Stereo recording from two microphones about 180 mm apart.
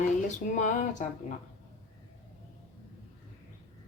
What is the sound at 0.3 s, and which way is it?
Music, 45° left (ahead or behind).